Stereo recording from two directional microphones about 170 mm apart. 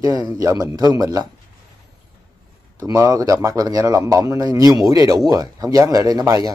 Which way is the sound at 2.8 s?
20° right (ahead or behind).